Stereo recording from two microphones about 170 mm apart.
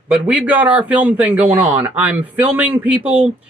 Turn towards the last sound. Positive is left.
turn(degrees=-10)  # may be behind; listen again after turning